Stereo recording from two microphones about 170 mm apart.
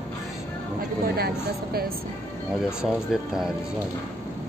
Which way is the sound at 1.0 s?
65° right (ahead or behind).